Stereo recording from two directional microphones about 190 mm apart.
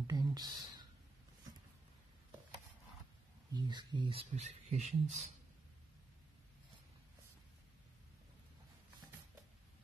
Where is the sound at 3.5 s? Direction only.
25° right (ahead or behind).